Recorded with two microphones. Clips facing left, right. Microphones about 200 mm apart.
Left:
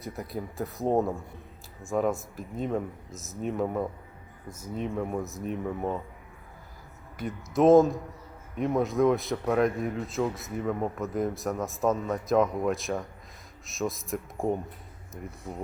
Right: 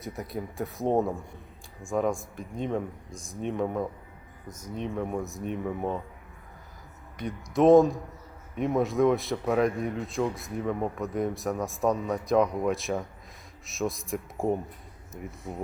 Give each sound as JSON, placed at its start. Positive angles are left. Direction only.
{"t": 0.0, "sound": "speech", "side_deg": 0}
{"t": 7.2, "sound": "speech", "side_deg": 0}